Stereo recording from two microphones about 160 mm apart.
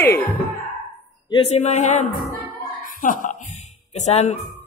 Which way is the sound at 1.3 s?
40° left (ahead or behind).